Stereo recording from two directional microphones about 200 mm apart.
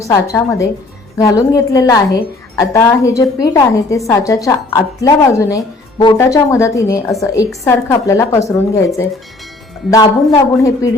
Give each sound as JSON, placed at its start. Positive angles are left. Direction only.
{"t": 0.0, "sound": "a woman's voice", "side_deg": 15}
{"t": 9.9, "sound": "a woman's voice", "side_deg": 15}